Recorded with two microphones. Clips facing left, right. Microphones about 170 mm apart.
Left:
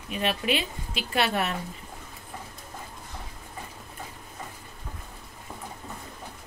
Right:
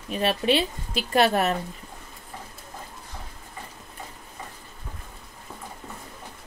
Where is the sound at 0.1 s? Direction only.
35° right (ahead or behind).